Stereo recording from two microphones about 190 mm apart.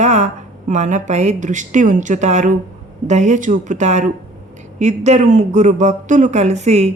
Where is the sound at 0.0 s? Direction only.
35° right (ahead or behind).